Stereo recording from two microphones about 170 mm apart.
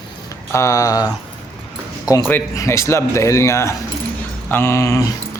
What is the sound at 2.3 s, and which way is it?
Speech, 15° left (ahead or behind).